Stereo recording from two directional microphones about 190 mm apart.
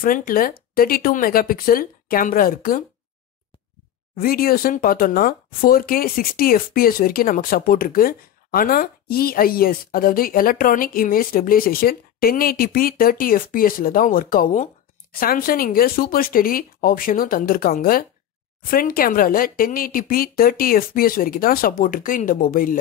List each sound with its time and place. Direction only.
0.0 s speech: 50° left (ahead or behind)
4.2 s speech: 50° left (ahead or behind)